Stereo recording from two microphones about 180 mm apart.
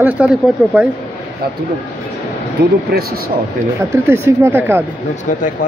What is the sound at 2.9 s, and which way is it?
Speech, 55° right (ahead or behind).